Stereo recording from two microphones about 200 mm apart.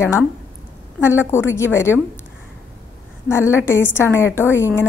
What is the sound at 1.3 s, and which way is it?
Speech, 15° left (ahead or behind).